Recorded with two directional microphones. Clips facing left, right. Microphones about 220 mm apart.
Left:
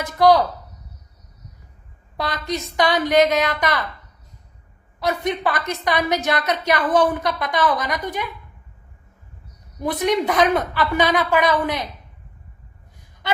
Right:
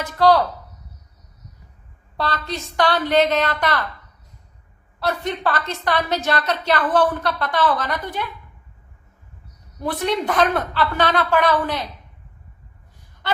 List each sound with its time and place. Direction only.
0.2 s a woman's voice: 15° left (ahead or behind)
2.1 s a woman's voice: 15° left (ahead or behind)
4.9 s a woman's voice: 15° left (ahead or behind)
9.8 s a woman's voice: 15° left (ahead or behind)